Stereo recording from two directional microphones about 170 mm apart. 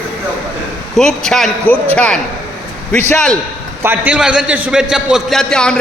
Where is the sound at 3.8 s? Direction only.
10° right (ahead or behind).